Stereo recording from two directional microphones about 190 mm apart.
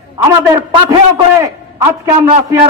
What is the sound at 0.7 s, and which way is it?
Speech, 15° right (ahead or behind).